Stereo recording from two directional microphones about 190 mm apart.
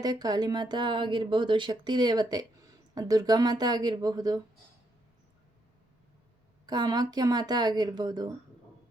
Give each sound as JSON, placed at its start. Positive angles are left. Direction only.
{"t": 0.0, "sound": "speech", "side_deg": -20}
{"t": 6.7, "sound": "speech", "side_deg": -20}